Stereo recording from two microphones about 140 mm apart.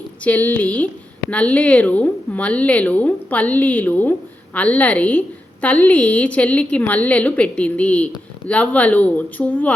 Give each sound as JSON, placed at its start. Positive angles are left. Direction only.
{"t": 0.3, "sound": "a woman's voice", "side_deg": 10}